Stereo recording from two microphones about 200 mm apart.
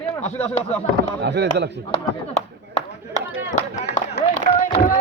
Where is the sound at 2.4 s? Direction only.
35° left (ahead or behind).